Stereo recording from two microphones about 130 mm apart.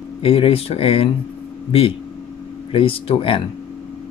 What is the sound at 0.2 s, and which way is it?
Speech, 45° left (ahead or behind).